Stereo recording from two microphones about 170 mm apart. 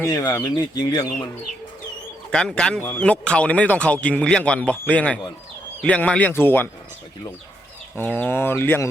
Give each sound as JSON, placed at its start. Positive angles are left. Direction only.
{"t": 0.1, "sound": "speech", "side_deg": 20}
{"t": 2.3, "sound": "speech", "side_deg": 5}
{"t": 7.9, "sound": "speech", "side_deg": 10}